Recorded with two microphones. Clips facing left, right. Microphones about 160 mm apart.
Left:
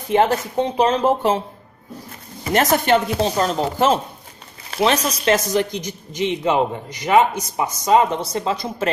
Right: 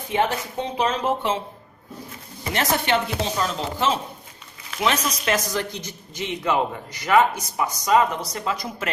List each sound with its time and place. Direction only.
0.1 s speech: 40° left (ahead or behind)
2.5 s speech: 45° left (ahead or behind)
4.6 s speech: 35° left (ahead or behind)
5.5 s a man's voice: 20° left (ahead or behind)